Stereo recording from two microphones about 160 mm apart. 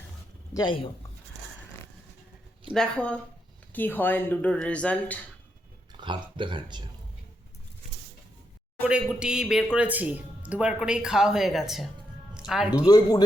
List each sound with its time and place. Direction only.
0.5 s speech: 30° left (ahead or behind)
2.7 s speech: 5° left (ahead or behind)
6.0 s speech: 30° right (ahead or behind)
8.9 s speech: 5° right (ahead or behind)
12.8 s speech: 25° left (ahead or behind)